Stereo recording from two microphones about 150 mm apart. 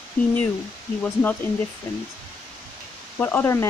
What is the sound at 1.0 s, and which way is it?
Speech, 10° left (ahead or behind).